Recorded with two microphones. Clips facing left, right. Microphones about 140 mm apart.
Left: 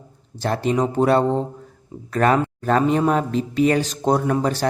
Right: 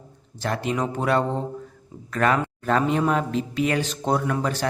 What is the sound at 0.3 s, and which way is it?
Speech, 30° left (ahead or behind).